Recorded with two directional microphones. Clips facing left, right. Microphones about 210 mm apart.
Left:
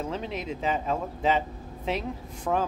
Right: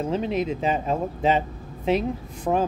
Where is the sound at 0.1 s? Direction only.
15° right (ahead or behind).